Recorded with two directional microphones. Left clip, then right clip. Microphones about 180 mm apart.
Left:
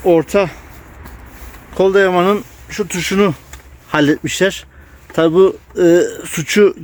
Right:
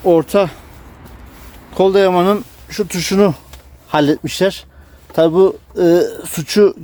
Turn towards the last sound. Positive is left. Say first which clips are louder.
# even
turn(degrees=0)  # may be behind; listen again after turning